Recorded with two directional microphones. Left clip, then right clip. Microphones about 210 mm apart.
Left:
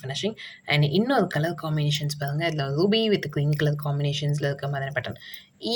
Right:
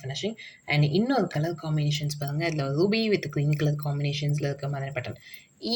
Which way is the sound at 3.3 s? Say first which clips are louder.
Left 3 dB; 15° left (ahead or behind).